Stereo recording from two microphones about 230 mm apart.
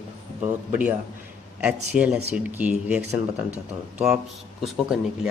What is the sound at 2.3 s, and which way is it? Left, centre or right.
Speech, centre.